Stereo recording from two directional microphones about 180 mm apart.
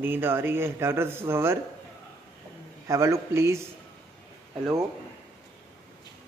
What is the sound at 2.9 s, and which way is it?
Speech, 15° right (ahead or behind).